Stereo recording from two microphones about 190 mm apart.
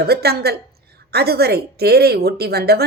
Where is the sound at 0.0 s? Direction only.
55° right (ahead or behind).